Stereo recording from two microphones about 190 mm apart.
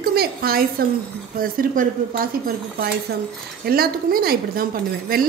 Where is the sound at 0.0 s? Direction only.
50° right (ahead or behind).